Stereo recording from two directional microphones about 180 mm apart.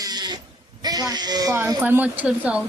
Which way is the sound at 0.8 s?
20° right (ahead or behind).